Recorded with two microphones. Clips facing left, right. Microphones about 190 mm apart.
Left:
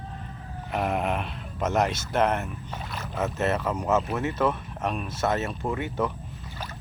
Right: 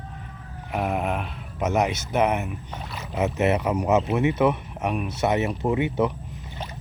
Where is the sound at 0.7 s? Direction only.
Centre (ahead or behind).